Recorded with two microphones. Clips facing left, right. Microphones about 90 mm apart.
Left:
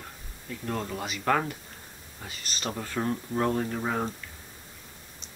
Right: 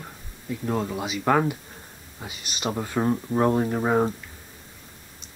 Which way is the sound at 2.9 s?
30° right (ahead or behind).